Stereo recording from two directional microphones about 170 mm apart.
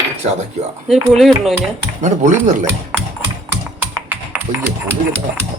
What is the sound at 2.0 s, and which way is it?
Speech, 45° right (ahead or behind).